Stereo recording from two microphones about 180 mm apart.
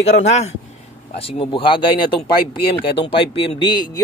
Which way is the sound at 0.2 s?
40° left (ahead or behind).